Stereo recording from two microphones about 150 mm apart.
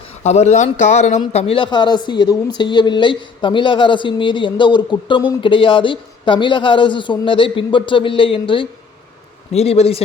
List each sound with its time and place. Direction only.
0.2 s a woman's voice: 50° left (ahead or behind)